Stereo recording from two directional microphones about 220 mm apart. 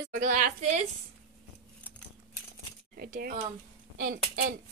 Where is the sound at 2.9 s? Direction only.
45° right (ahead or behind).